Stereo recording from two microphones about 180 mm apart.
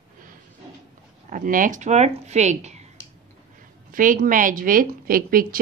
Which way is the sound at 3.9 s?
50° right (ahead or behind).